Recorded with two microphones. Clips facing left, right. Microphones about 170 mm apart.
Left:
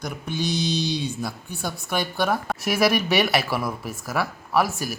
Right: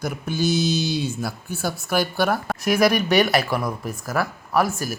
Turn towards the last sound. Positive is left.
turn(degrees=0)  # may be behind; listen again after turning